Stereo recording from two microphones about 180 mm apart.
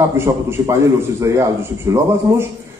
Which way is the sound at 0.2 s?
15° right (ahead or behind).